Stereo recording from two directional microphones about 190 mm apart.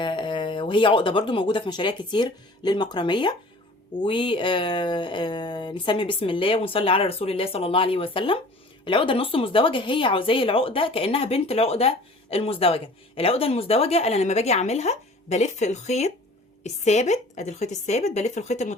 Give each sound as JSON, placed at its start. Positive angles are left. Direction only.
{"t": 0.0, "sound": "speech", "side_deg": 25}